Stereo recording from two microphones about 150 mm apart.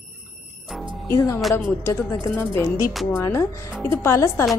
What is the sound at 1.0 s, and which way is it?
Speech, 20° left (ahead or behind).